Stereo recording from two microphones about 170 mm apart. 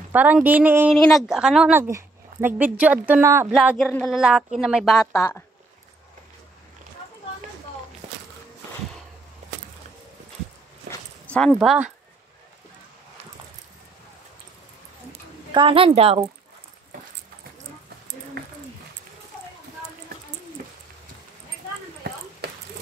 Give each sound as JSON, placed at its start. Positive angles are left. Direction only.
{"t": 0.1, "sound": "a woman's voice", "side_deg": -10}
{"t": 3.5, "sound": "speech", "side_deg": 0}
{"t": 10.9, "sound": "dog", "side_deg": 5}
{"t": 15.5, "sound": "a woman's voice", "side_deg": -30}